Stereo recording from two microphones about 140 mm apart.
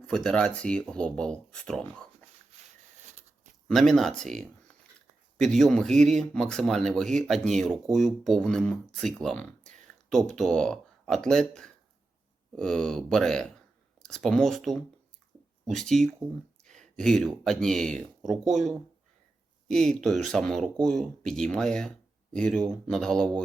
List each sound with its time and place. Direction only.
0.1 s speech: 5° left (ahead or behind)
3.7 s speech: centre (ahead or behind)